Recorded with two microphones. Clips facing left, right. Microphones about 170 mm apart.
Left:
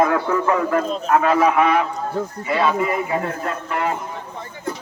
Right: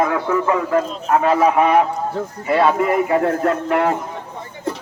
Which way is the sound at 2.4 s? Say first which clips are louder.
Right 4 dB; 55° right (ahead or behind).